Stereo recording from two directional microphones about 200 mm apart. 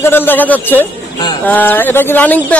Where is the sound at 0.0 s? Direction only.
10° left (ahead or behind).